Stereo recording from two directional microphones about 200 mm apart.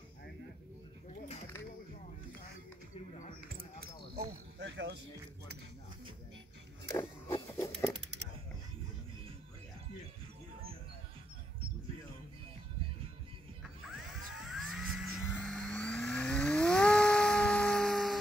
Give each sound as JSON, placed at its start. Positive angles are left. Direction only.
{"t": 4.1, "sound": "cricket", "side_deg": -60}
{"t": 6.9, "sound": "a sound", "side_deg": 15}
{"t": 13.8, "sound": "music", "side_deg": 0}
{"t": 15.3, "sound": "vehicle", "side_deg": 5}